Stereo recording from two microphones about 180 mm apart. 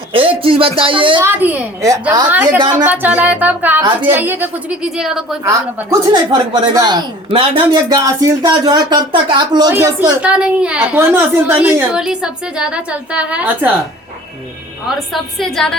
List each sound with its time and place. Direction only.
0.1 s speech: 30° right (ahead or behind)
1.2 s a woman's voice: 10° right (ahead or behind)
5.4 s speech: 15° right (ahead or behind)
10.2 s a woman's voice: 5° right (ahead or behind)
14.8 s a woman's voice: centre (ahead or behind)